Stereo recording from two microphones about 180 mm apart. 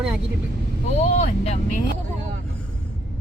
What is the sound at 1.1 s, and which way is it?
Speech, 40° left (ahead or behind).